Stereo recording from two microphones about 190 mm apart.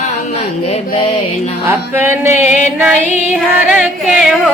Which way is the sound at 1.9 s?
10° right (ahead or behind).